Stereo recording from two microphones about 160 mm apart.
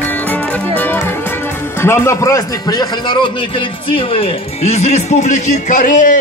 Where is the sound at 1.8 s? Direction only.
15° left (ahead or behind); by 6.1 s 55° left (ahead or behind).